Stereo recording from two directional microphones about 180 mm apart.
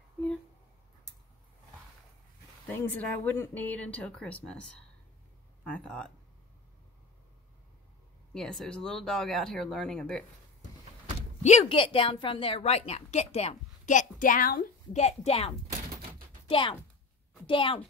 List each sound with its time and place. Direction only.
2.7 s speech: 10° left (ahead or behind)
8.3 s speech: 5° left (ahead or behind)
11.4 s a woman's voice: 35° left (ahead or behind); by 15.0 s 50° left (ahead or behind)
15.0 s a woman's voice: 35° left (ahead or behind)